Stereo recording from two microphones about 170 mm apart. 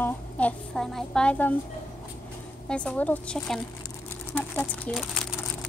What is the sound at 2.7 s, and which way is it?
A woman's voice, 5° left (ahead or behind).